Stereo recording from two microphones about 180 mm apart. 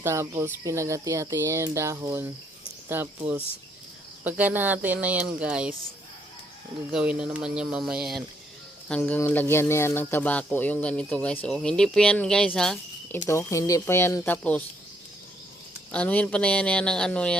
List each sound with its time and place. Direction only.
0.0 s speech: 15° right (ahead or behind)
4.2 s speech: 10° right (ahead or behind)
6.9 s speech: 5° right (ahead or behind)
8.9 s speech: 10° left (ahead or behind)
13.2 s speech: 15° left (ahead or behind)
15.9 s speech: 5° left (ahead or behind)